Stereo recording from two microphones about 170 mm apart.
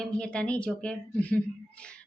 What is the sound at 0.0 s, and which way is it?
A woman's voice, 5° left (ahead or behind).